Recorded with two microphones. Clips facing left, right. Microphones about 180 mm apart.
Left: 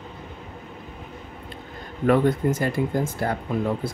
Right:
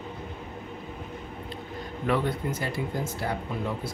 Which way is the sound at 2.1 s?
45° left (ahead or behind).